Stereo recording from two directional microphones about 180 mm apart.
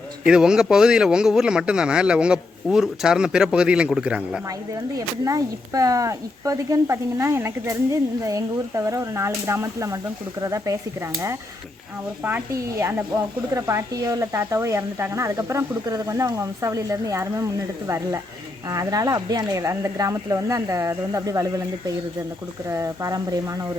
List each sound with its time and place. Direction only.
0.3 s speech: 5° right (ahead or behind)
4.4 s speech: 20° right (ahead or behind)
12.2 s speech: 15° right (ahead or behind)